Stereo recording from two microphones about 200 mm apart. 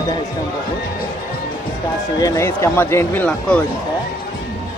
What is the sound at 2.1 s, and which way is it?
Speech, 15° left (ahead or behind).